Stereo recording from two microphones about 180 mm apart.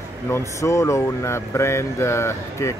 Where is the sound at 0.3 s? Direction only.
15° left (ahead or behind).